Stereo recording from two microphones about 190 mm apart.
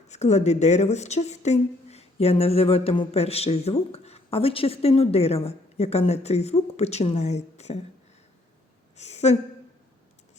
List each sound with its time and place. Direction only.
0.1 s speech: 35° left (ahead or behind)
9.0 s a woman's voice: 35° left (ahead or behind)